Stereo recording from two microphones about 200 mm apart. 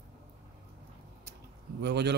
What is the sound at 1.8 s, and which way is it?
Speech, 55° right (ahead or behind).